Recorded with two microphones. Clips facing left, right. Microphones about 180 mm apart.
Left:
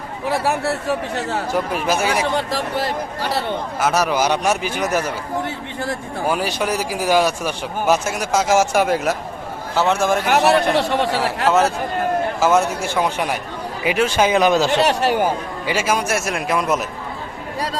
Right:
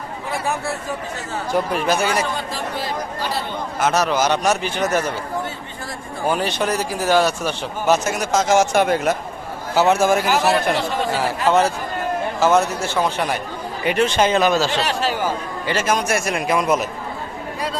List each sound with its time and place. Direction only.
0.3 s speech: 70° left (ahead or behind)
1.5 s a man's voice: 5° left (ahead or behind)
2.3 s speech: 70° left (ahead or behind)
3.8 s speech: 5° left (ahead or behind)
6.2 s a man's voice: 5° left (ahead or behind)
10.4 s speech: 70° left (ahead or behind)
12.4 s speech: 10° left (ahead or behind)
15.0 s speech: 60° left (ahead or behind)
15.6 s a man's voice: 10° left (ahead or behind)